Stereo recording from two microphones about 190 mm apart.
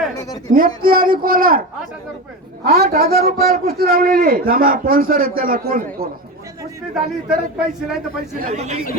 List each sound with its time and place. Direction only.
0.5 s a man's voice: 50° right (ahead or behind)
2.6 s a woman's voice: 55° right (ahead or behind)
6.9 s a man's voice: centre (ahead or behind)
8.4 s speech: 35° right (ahead or behind)